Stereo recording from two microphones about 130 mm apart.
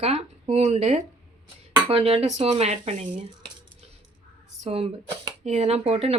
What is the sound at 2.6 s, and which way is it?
Speech, 60° right (ahead or behind).